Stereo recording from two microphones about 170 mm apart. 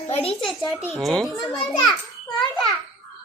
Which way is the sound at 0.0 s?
35° left (ahead or behind).